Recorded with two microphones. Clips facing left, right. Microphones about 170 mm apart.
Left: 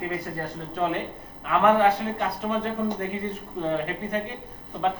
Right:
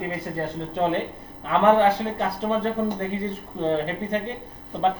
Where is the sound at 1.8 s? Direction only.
30° right (ahead or behind).